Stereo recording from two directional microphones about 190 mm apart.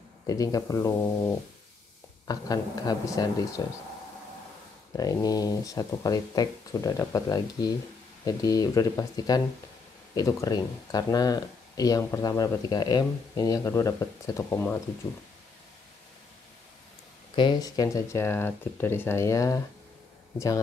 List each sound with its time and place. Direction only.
0.3 s speech: 20° left (ahead or behind)
4.9 s speech: 20° left (ahead or behind)
17.4 s speech: 20° left (ahead or behind)